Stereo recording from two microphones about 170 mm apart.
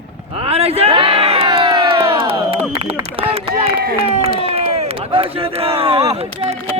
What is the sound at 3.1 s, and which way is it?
Speech, 35° right (ahead or behind).